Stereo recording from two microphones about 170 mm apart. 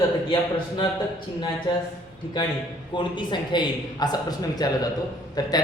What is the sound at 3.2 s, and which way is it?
A man's voice, 25° left (ahead or behind).